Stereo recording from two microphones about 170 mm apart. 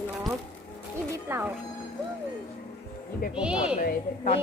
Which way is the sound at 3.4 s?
5° right (ahead or behind).